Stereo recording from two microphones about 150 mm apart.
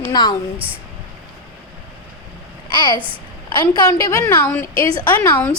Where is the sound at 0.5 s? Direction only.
10° right (ahead or behind).